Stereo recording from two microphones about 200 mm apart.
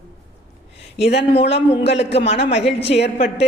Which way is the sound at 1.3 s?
30° left (ahead or behind).